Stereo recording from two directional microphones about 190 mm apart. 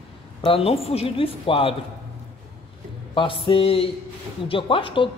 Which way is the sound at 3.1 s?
25° left (ahead or behind).